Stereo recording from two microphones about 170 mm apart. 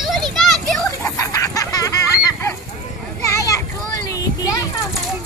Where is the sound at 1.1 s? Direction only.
20° left (ahead or behind).